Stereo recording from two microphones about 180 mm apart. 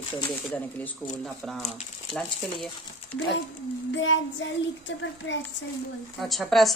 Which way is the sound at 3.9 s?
90° left.